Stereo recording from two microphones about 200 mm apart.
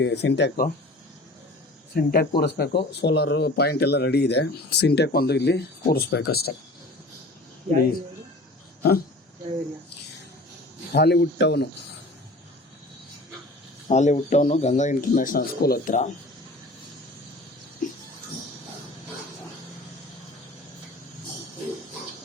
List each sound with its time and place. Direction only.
0.0 s speech: 60° left (ahead or behind)
2.0 s speech: 50° left (ahead or behind)
8.8 s speech: 50° left (ahead or behind)
10.9 s speech: 55° left (ahead or behind)
13.8 s a man's voice: 35° left (ahead or behind)